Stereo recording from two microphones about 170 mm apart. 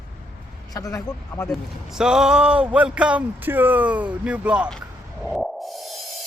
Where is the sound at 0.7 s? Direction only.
20° left (ahead or behind).